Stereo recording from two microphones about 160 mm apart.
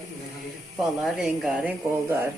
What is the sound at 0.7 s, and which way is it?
Speech, centre (ahead or behind).